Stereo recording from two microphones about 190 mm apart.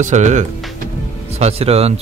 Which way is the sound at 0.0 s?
40° right (ahead or behind).